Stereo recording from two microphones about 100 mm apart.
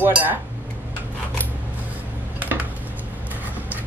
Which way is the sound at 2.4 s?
20° right (ahead or behind).